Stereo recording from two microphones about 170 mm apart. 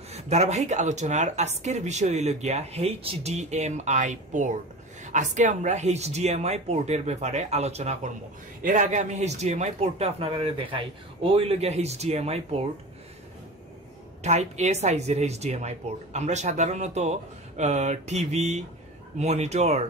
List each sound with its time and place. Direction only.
0.1 s speech: 40° right (ahead or behind)
14.2 s speech: 40° right (ahead or behind)